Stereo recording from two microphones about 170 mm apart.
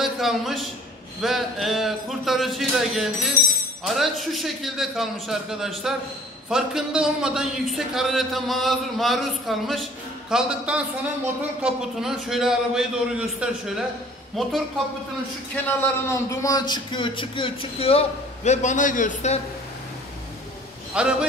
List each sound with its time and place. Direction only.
0.0 s a man's voice: centre (ahead or behind)
15.5 s a man's voice: 10° left (ahead or behind); by 19.4 s 45° left (ahead or behind)
20.9 s a man's voice: 5° right (ahead or behind)